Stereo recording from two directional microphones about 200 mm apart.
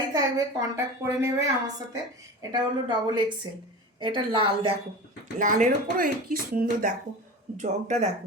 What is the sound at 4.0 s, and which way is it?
Speech, 25° right (ahead or behind).